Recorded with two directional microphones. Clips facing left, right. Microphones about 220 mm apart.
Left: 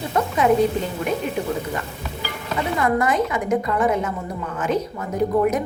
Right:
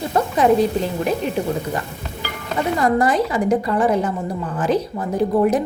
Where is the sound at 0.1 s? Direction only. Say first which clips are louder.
Right 2 dB; 35° right (ahead or behind).